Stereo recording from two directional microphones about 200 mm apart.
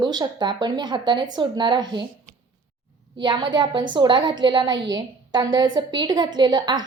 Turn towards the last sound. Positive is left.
turn(degrees=-20)  # may be behind; listen again after turning